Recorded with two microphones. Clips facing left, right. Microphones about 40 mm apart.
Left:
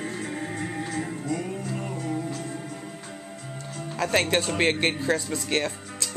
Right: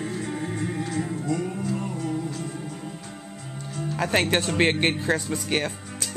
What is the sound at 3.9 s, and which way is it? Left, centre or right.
Speech, centre.